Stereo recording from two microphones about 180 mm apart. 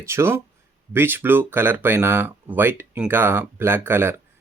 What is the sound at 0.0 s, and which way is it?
Speech, 15° right (ahead or behind).